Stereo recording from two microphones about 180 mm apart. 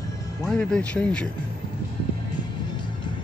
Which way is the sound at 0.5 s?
5° left (ahead or behind).